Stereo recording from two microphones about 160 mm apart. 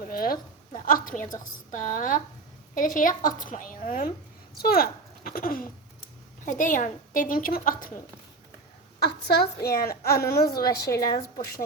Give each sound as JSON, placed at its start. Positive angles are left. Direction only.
{"t": 0.0, "sound": "a sound", "side_deg": 65}
{"t": 1.7, "sound": "a woman's voice", "side_deg": 55}
{"t": 4.5, "sound": "a woman's voice", "side_deg": 70}
{"t": 9.0, "sound": "a woman's voice", "side_deg": 90}
{"t": 9.6, "sound": "a woman's voice", "side_deg": 70}
{"t": 10.8, "sound": "a woman's voice", "side_deg": 20}